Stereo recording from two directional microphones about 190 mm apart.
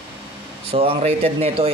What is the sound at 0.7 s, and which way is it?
Speech, 30° right (ahead or behind).